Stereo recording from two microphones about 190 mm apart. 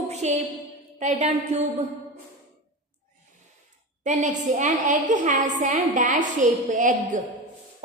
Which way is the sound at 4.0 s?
40° right (ahead or behind).